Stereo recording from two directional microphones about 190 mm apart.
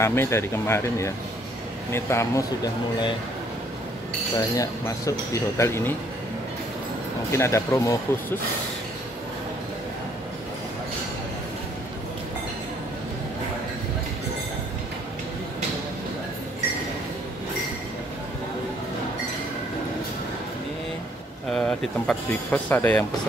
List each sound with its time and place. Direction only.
0.0 s speech: 15° left (ahead or behind)
4.4 s speech: 15° left (ahead or behind)
7.3 s speech: 15° left (ahead or behind)
21.5 s speech: 5° left (ahead or behind)